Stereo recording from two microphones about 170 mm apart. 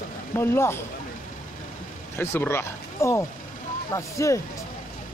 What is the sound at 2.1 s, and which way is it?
Speech, 15° left (ahead or behind).